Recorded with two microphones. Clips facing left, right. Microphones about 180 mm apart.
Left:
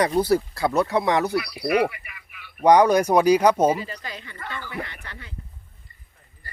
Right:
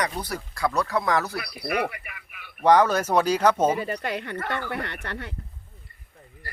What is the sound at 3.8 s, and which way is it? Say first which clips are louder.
Speech: right 7 dB; 60° right (ahead or behind).